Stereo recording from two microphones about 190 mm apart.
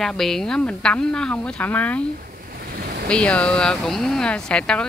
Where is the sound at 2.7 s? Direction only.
55° right (ahead or behind).